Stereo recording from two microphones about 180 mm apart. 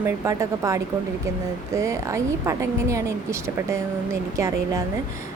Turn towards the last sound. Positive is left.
turn(degrees=-15)  # may be behind; listen again after turning